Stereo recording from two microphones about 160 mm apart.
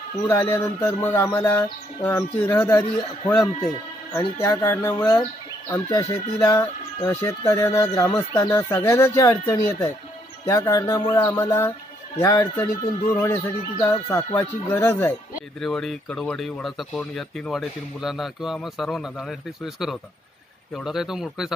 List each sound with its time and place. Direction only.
0.3 s speech: 15° left (ahead or behind)
15.6 s speech: centre (ahead or behind)